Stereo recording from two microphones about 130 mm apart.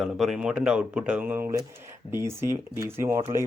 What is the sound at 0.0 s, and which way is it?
A man's voice, centre (ahead or behind).